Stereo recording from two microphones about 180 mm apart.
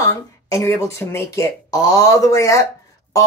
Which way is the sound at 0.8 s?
15° left (ahead or behind).